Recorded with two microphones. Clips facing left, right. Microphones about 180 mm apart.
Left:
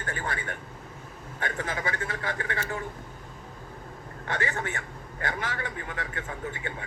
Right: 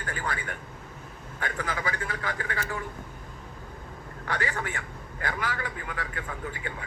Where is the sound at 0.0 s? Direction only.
25° left (ahead or behind).